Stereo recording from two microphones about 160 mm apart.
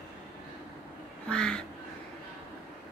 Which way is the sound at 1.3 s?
5° left (ahead or behind).